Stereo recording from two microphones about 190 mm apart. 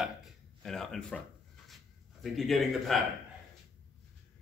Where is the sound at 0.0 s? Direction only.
Centre (ahead or behind).